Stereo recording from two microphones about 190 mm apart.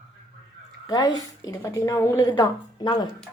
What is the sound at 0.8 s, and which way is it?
A woman's voice, 20° left (ahead or behind).